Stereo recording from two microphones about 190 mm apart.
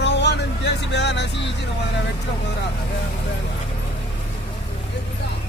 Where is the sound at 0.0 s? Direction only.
65° left (ahead or behind).